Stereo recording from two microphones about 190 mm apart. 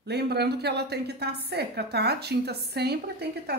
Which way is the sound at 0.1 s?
60° right (ahead or behind).